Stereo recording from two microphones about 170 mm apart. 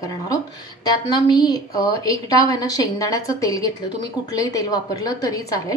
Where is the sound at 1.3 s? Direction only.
25° left (ahead or behind).